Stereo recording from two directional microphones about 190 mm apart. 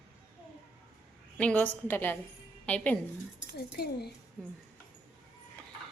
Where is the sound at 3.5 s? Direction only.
55° left (ahead or behind).